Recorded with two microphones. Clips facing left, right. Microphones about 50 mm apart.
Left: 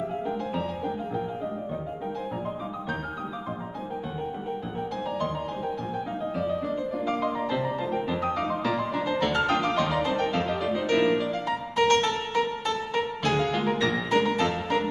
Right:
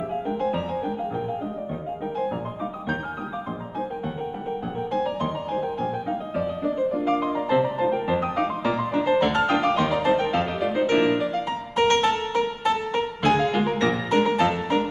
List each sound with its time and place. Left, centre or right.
0.5 s music: centre
6.0 s music: centre
8.9 s music: right; by 14.3 s centre
14.3 s music: centre